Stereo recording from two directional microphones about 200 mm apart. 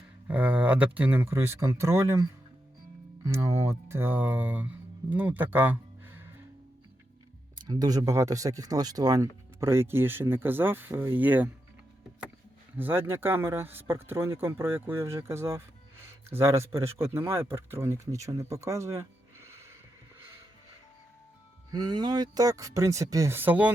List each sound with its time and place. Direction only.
0.3 s speech: 10° right (ahead or behind)
3.2 s speech: 15° right (ahead or behind)
7.6 s speech: 20° right (ahead or behind)
12.7 s speech: 10° right (ahead or behind)
21.7 s speech: 20° right (ahead or behind)